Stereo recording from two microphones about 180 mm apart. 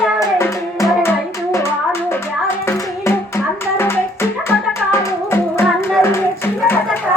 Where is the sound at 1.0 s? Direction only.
15° left (ahead or behind).